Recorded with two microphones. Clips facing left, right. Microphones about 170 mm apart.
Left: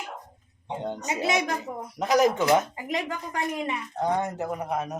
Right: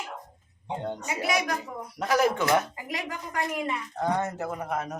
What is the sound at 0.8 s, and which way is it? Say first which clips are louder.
A woman's voice: left 3 dB; 20° left (ahead or behind).